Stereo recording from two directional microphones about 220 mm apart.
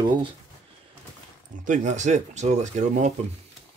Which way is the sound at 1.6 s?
35° right (ahead or behind).